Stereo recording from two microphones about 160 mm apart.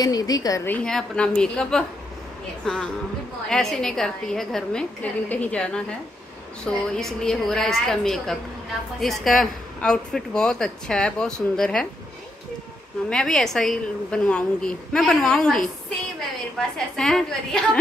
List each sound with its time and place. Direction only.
0.0 s a woman's voice: 25° left (ahead or behind)
0.7 s a man's voice: 5° left (ahead or behind)
13.1 s a man's voice: 5° left (ahead or behind)